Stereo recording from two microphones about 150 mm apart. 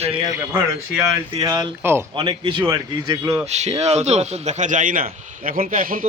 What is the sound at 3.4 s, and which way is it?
A man's voice, 45° right (ahead or behind).